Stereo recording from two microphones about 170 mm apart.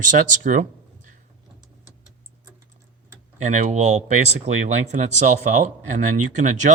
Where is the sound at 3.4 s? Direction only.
45° right (ahead or behind).